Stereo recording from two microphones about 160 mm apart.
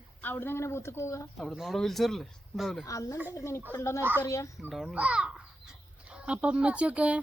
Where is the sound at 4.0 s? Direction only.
15° right (ahead or behind).